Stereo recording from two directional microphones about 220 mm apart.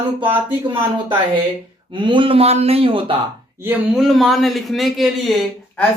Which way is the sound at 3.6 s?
Centre (ahead or behind).